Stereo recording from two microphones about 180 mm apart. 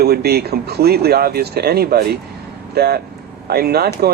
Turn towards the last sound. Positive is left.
turn(degrees=-60)  # may be behind; listen again after turning